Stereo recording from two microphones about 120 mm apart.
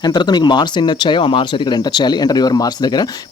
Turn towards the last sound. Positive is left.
turn(degrees=35)  # may be behind; listen again after turning